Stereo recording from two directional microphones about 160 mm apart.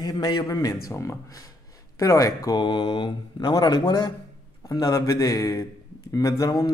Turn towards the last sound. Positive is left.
turn(degrees=25)  # may be behind; listen again after turning